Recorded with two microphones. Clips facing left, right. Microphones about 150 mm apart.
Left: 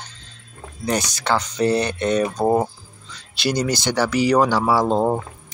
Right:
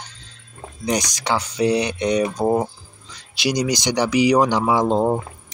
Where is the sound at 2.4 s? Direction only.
5° left (ahead or behind).